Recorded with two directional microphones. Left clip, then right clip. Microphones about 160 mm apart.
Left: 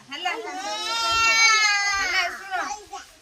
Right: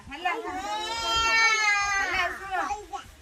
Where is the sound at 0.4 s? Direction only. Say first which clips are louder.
Left 1 dB; 20° left (ahead or behind).